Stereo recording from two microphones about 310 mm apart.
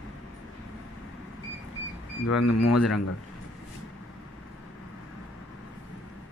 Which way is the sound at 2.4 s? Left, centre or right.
Left.